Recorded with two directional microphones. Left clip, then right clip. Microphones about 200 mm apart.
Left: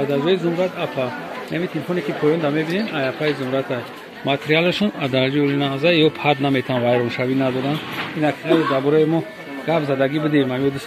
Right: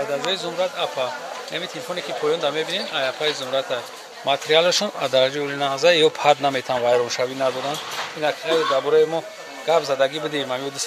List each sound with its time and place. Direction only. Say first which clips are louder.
0.1 s speech: left 5 dB; 5° right (ahead or behind)
2.4 s speech: left 2 dB; 5° right (ahead or behind)
4.3 s speech: right 1 dB; 25° right (ahead or behind)